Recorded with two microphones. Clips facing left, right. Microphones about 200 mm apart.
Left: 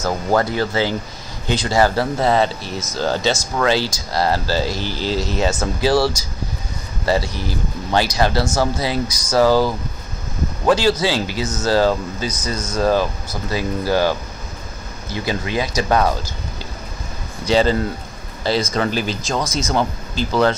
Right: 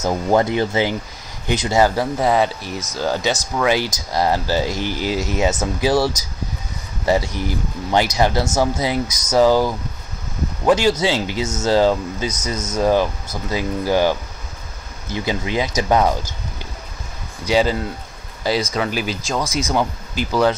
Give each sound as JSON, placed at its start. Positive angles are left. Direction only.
{"t": 0.0, "sound": "speech", "side_deg": -20}
{"t": 5.1, "sound": "speech", "side_deg": 30}
{"t": 5.4, "sound": "speech", "side_deg": -20}
{"t": 10.7, "sound": "speech", "side_deg": -20}
{"t": 17.5, "sound": "speech", "side_deg": -10}